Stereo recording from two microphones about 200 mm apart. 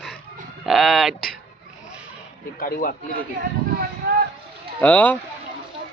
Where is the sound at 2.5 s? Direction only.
45° left (ahead or behind).